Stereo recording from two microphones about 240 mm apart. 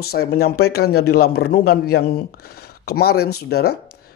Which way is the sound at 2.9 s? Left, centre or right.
Left.